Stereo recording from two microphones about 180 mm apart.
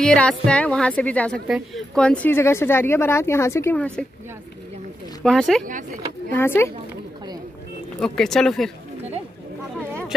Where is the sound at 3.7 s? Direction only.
5° left (ahead or behind).